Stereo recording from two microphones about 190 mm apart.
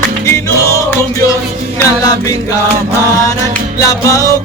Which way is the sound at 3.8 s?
15° left (ahead or behind).